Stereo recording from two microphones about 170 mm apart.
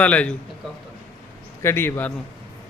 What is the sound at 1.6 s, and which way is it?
Speech, 15° left (ahead or behind).